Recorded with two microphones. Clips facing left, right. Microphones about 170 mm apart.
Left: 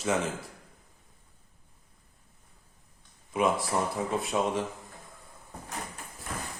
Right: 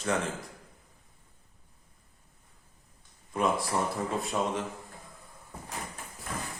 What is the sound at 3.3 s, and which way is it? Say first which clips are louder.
Speech: left 2 dB; 5° left (ahead or behind).